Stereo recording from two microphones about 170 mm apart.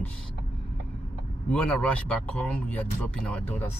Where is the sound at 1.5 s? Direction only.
5° left (ahead or behind).